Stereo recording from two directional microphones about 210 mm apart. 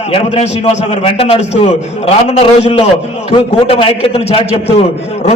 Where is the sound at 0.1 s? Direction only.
30° left (ahead or behind).